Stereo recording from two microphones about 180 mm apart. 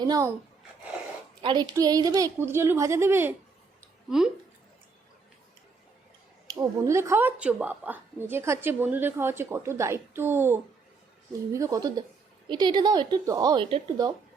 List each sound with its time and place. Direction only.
0.0 s a woman's voice: 20° right (ahead or behind)
1.4 s a woman's voice: 25° right (ahead or behind)
6.5 s a woman's voice: 20° right (ahead or behind)